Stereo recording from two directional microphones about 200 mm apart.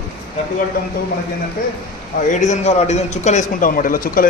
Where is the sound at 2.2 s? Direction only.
35° left (ahead or behind).